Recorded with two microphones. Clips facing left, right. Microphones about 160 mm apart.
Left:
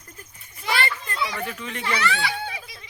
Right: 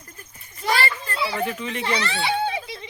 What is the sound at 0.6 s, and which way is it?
Children playing, 40° right (ahead or behind).